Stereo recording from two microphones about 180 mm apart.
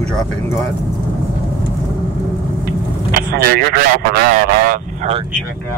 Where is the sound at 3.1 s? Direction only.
55° right (ahead or behind).